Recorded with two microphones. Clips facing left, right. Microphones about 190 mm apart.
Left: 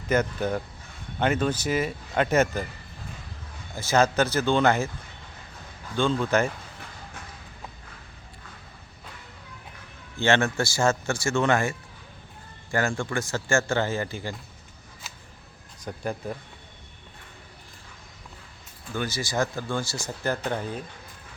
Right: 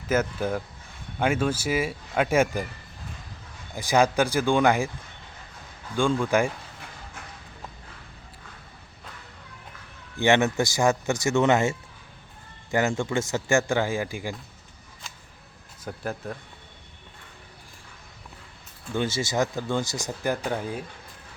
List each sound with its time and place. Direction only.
0.1 s speech: 5° right (ahead or behind)
3.8 s speech: 15° right (ahead or behind)
6.0 s speech: 10° right (ahead or behind)
10.2 s speech: 15° right (ahead or behind)
15.1 s a sound: 5° left (ahead or behind)
15.8 s speech: centre (ahead or behind)
18.9 s speech: 25° right (ahead or behind); by 20.8 s 10° right (ahead or behind)